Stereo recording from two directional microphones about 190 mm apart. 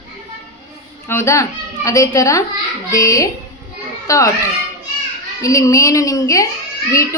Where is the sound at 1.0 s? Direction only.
15° left (ahead or behind).